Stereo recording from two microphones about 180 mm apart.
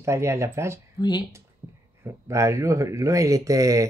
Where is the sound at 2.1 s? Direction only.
15° right (ahead or behind).